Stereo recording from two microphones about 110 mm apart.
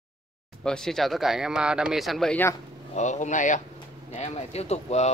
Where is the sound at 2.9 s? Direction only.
90° left.